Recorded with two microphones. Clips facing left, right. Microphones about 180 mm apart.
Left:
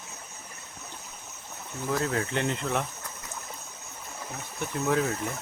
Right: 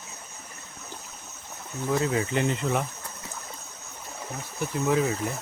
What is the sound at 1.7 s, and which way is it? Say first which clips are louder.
Speech: right 3 dB; centre (ahead or behind).